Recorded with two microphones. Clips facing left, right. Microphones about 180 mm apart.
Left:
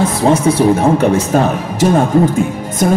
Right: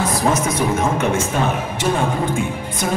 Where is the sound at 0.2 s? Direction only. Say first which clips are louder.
Left 10 dB; 30° left (ahead or behind).